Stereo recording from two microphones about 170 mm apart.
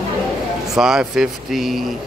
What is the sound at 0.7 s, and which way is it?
Speech, 5° right (ahead or behind).